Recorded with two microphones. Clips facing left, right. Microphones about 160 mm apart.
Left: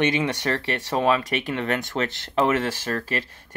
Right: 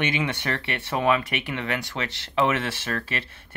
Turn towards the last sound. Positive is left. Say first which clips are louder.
# left 3 dB
turn(degrees=40)  # may be behind; listen again after turning